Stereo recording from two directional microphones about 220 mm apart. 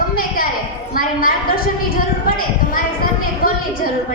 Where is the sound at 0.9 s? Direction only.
40° left (ahead or behind).